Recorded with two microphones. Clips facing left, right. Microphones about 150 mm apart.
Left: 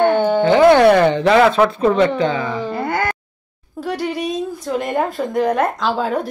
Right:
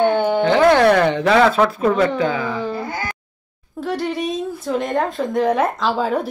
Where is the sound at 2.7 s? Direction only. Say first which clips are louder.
Left 5 dB; 65° left (ahead or behind).